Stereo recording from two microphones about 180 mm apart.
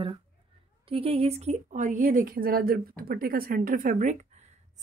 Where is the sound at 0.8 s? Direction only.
30° right (ahead or behind).